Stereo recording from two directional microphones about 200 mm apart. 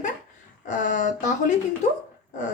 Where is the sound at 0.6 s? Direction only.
40° left (ahead or behind).